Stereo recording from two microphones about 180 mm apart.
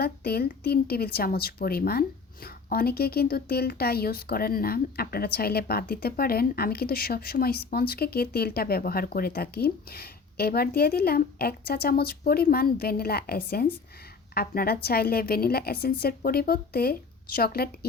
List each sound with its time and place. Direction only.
0.0 s a woman's voice: 60° left (ahead or behind)